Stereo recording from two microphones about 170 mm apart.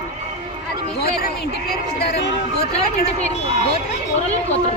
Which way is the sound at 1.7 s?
65° left (ahead or behind).